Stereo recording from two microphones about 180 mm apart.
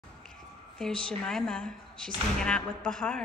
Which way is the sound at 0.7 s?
5° left (ahead or behind).